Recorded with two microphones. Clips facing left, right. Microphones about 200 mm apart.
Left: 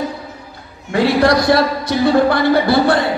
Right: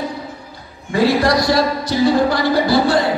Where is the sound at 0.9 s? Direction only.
60° left (ahead or behind).